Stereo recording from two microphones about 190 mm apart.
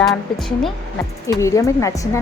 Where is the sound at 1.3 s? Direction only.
15° left (ahead or behind).